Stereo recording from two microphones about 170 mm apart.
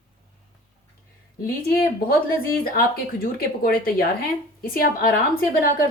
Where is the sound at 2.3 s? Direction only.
60° left (ahead or behind).